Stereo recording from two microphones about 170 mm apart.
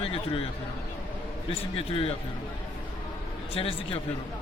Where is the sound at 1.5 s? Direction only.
35° left (ahead or behind).